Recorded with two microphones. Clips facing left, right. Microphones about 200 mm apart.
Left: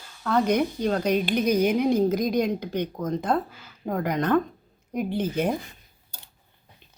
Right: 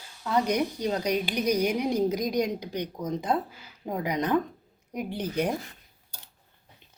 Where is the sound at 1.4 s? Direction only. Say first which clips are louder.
Left 3 dB; 55° left (ahead or behind).